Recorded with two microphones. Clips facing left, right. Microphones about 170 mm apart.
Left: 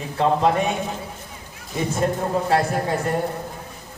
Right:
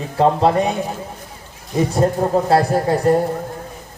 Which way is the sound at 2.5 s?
40° right (ahead or behind).